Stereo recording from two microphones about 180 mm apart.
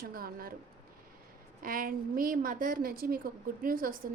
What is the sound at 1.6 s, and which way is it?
A woman's voice, 50° right (ahead or behind).